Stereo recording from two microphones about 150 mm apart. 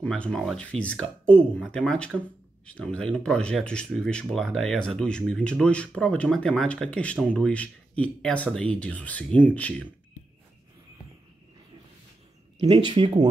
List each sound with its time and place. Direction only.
0.0 s speech: 10° left (ahead or behind)
12.5 s speech: 30° right (ahead or behind)